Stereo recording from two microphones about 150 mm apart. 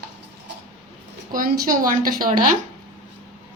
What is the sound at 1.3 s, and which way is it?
Speech, 65° right (ahead or behind).